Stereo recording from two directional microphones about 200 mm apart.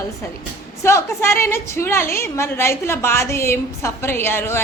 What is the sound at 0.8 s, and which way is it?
A woman's voice, 15° left (ahead or behind).